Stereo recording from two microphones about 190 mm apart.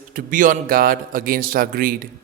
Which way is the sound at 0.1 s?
45° right (ahead or behind).